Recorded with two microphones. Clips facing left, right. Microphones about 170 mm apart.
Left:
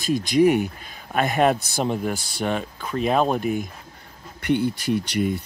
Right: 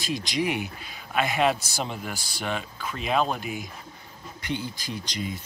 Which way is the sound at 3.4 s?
50° left (ahead or behind).